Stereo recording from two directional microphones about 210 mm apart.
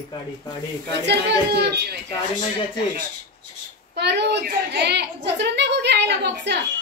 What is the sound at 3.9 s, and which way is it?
A woman's voice, 55° right (ahead or behind).